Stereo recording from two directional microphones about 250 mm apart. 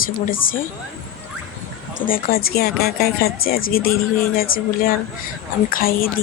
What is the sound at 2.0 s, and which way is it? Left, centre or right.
Speech, left.